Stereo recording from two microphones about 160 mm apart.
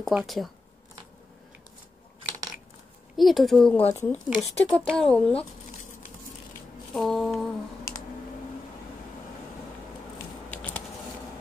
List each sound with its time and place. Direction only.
0.0 s speech: centre (ahead or behind)
3.2 s speech: centre (ahead or behind)
6.9 s speech: centre (ahead or behind)
10.5 s a sound: 10° left (ahead or behind)